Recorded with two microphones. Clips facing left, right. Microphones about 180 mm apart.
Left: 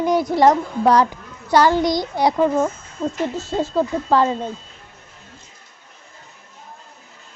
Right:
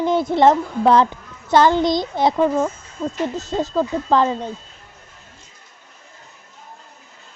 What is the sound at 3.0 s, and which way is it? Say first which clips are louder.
Speech: even; 5° left (ahead or behind).